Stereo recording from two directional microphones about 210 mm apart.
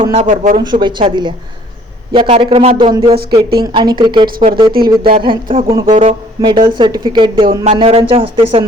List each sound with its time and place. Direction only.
0.0 s speech: 30° right (ahead or behind)
0.5 s speech: 20° right (ahead or behind)